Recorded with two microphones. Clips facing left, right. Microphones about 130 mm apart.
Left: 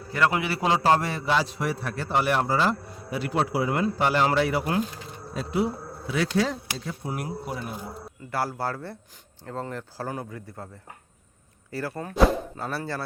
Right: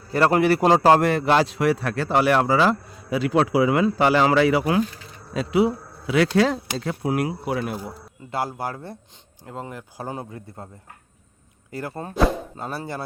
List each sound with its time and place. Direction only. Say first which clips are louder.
0.1 s a man's voice: right 7 dB; 45° right (ahead or behind); by 7.8 s 90° right
8.3 s speech: right 1 dB; 20° right (ahead or behind)
11.7 s speech: right 1 dB; 20° right (ahead or behind)